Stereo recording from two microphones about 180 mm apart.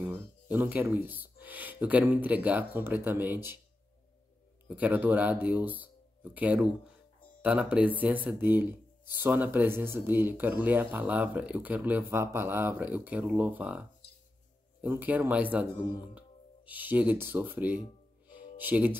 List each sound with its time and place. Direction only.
0.0 s speech: 10° right (ahead or behind)
4.6 s speech: 10° right (ahead or behind)